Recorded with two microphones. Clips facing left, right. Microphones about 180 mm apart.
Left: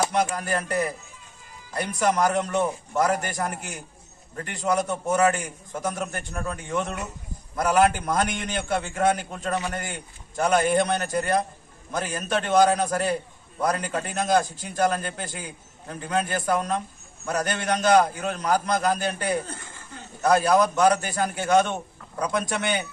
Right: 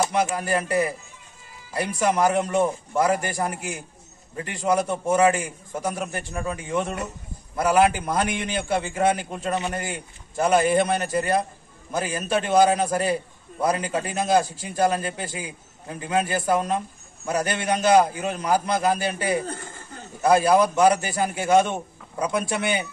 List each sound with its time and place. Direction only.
0.1 s a man's voice: 5° right (ahead or behind)
9.5 s a man's voice: 20° right (ahead or behind)
9.8 s a man's voice: 10° right (ahead or behind)